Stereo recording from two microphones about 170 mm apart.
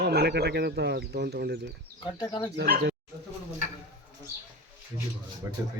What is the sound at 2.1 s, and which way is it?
Speech, 25° left (ahead or behind).